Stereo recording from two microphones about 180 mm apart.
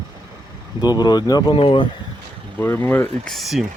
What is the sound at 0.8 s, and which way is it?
Speech, 25° left (ahead or behind).